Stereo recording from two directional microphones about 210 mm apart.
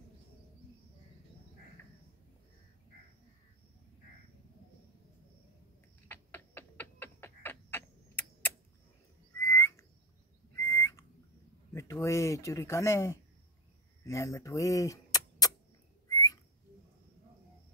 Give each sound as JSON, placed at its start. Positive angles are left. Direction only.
{"t": 6.0, "sound": "a sound", "side_deg": 10}
{"t": 9.4, "sound": "frog", "side_deg": 15}
{"t": 10.5, "sound": "squawk", "side_deg": 15}
{"t": 11.7, "sound": "speech", "side_deg": 15}
{"t": 16.1, "sound": "whistling", "side_deg": 15}